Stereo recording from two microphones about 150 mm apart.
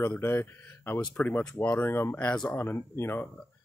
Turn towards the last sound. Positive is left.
turn(degrees=15)  # may be behind; listen again after turning